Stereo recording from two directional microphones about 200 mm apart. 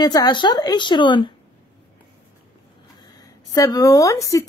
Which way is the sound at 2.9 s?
20° left (ahead or behind).